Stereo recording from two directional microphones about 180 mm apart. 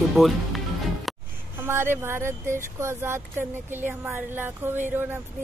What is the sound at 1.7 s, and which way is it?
Speech, 15° right (ahead or behind).